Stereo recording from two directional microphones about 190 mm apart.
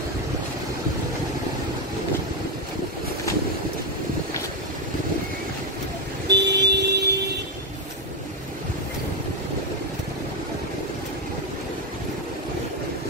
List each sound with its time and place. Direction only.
6.2 s vehicle: 65° right (ahead or behind)